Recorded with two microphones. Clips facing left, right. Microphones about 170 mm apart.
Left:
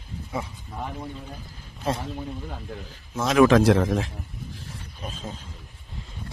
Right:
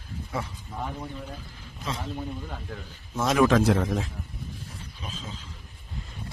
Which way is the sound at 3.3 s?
75° left (ahead or behind).